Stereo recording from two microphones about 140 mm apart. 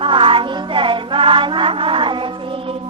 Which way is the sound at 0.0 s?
40° right (ahead or behind).